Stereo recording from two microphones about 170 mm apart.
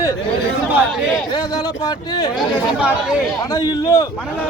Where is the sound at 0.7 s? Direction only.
Centre (ahead or behind).